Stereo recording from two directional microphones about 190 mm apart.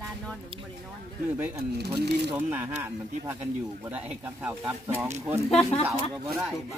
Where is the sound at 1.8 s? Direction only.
60° right (ahead or behind).